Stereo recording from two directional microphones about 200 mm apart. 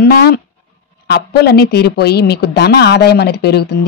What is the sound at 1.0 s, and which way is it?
A woman's voice, 55° left (ahead or behind).